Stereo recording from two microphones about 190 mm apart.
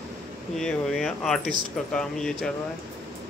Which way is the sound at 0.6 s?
5° left (ahead or behind).